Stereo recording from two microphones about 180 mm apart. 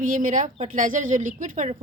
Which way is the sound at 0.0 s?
50° right (ahead or behind).